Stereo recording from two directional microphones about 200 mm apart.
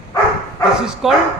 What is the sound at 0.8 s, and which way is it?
Speech, 5° right (ahead or behind).